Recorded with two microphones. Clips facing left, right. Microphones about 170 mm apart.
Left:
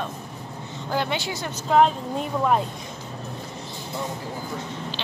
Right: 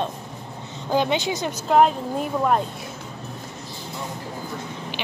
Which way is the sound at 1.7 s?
5° right (ahead or behind).